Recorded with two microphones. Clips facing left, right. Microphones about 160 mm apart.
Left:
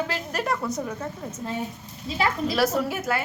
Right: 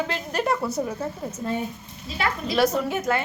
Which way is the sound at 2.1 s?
25° left (ahead or behind).